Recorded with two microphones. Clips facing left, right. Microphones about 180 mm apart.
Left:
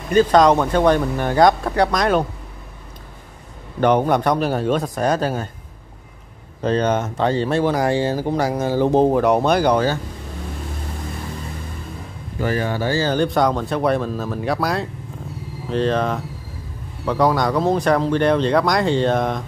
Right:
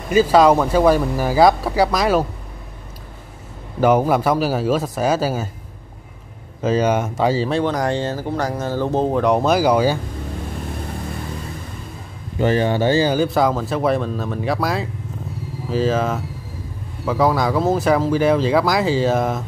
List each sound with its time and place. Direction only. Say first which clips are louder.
0.1 s speech: right 1 dB; 5° right (ahead or behind)
3.8 s speech: right 1 dB; 5° right (ahead or behind)
6.6 s speech: right 1 dB; 5° right (ahead or behind); by 9.1 s 15° left (ahead or behind)
9.1 s speech: even; centre (ahead or behind)
12.4 s speech: right 4 dB; 25° right (ahead or behind)
13.1 s speech: right 1 dB; 5° right (ahead or behind)